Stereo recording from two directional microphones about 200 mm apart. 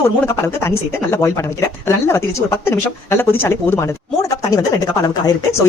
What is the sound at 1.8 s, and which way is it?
Speech, 15° left (ahead or behind).